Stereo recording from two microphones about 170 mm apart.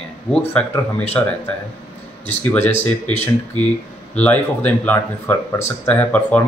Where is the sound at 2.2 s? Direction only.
10° left (ahead or behind).